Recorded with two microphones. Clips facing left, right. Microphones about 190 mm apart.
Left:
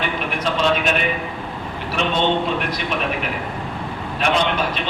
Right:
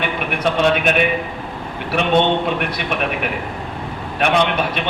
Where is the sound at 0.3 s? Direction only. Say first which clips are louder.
Right 4 dB; 55° right (ahead or behind).